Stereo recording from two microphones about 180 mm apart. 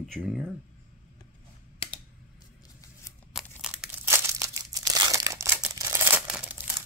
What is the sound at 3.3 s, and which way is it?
Crumpling, centre (ahead or behind).